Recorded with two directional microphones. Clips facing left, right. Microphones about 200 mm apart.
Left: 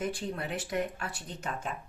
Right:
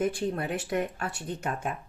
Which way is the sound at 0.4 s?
55° right (ahead or behind).